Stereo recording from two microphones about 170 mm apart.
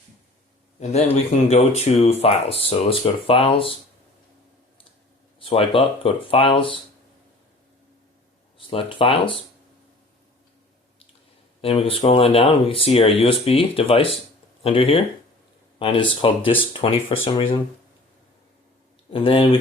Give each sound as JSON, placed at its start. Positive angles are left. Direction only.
{"t": 1.1, "sound": "speech", "side_deg": 40}
{"t": 5.4, "sound": "speech", "side_deg": 35}
{"t": 8.5, "sound": "speech", "side_deg": 30}
{"t": 11.6, "sound": "speech", "side_deg": 30}
{"t": 19.1, "sound": "speech", "side_deg": 30}